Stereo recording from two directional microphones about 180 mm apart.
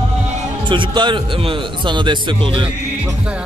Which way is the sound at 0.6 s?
25° right (ahead or behind).